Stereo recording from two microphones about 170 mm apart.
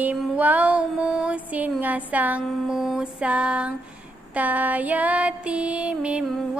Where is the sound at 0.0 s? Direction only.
10° right (ahead or behind).